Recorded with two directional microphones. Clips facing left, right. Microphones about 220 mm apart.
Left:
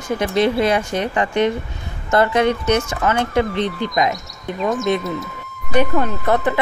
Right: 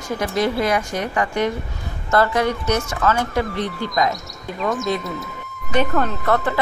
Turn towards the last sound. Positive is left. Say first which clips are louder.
# left 2 dB
turn(degrees=15)  # may be behind; listen again after turning